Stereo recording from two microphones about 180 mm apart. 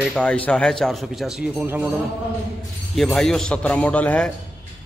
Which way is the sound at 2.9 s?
Centre (ahead or behind).